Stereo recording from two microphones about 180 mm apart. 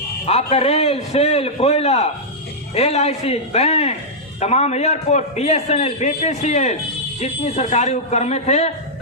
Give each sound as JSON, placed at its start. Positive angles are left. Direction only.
{"t": 0.3, "sound": "a man's voice", "side_deg": 35}